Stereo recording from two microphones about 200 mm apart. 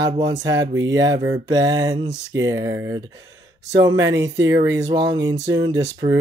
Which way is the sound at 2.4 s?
15° right (ahead or behind).